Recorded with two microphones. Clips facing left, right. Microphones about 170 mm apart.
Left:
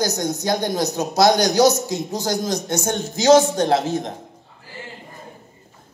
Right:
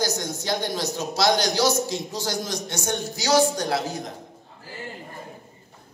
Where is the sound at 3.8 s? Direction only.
25° left (ahead or behind).